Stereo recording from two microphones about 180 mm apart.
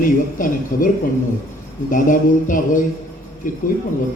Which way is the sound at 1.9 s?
50° left (ahead or behind).